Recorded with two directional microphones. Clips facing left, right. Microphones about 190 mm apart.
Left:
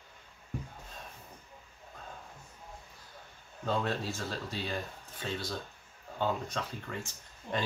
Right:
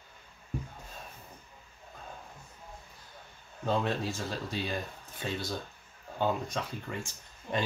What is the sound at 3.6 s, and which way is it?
Speech, 20° right (ahead or behind).